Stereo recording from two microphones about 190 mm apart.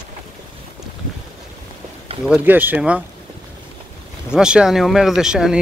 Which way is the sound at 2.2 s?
5° right (ahead or behind).